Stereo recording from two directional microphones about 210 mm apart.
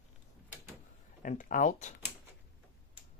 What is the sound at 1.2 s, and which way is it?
Speech, 40° left (ahead or behind).